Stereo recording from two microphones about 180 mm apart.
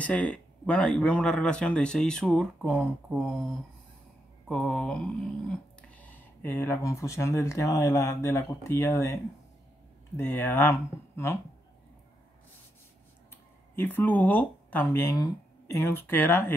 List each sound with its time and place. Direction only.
0.0 s speech: 5° left (ahead or behind)
2.7 s speech: 10° right (ahead or behind)
4.5 s speech: 5° left (ahead or behind)
13.7 s speech: 10° left (ahead or behind)